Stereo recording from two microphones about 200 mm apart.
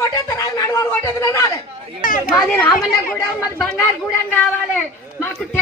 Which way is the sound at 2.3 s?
10° left (ahead or behind).